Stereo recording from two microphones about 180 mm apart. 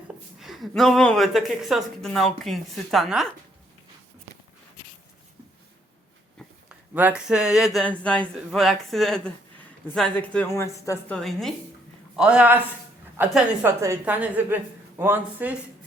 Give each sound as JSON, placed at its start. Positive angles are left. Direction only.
{"t": 0.3, "sound": "a woman's voice", "side_deg": 0}
{"t": 6.9, "sound": "a woman's voice", "side_deg": -5}
{"t": 10.6, "sound": "a woman's voice", "side_deg": 15}
{"t": 11.1, "sound": "a woman's voice", "side_deg": 0}